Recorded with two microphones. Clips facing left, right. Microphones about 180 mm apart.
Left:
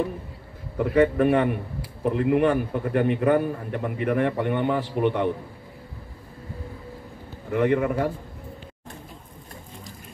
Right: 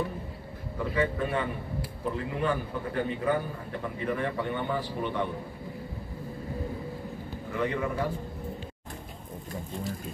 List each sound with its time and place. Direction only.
0.7 s a man's voice: 65° left (ahead or behind)
7.5 s a man's voice: 60° left (ahead or behind)